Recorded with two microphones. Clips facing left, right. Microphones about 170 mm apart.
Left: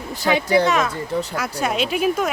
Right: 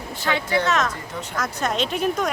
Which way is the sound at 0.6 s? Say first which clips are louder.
Left 3 dB; 10° left (ahead or behind).